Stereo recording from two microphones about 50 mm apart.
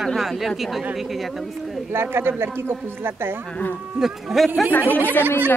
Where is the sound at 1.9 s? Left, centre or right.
Right.